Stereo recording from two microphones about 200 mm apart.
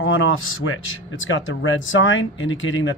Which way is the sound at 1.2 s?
75° left (ahead or behind).